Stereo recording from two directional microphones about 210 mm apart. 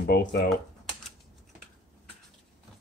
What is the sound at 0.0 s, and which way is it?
Speech, 40° left (ahead or behind).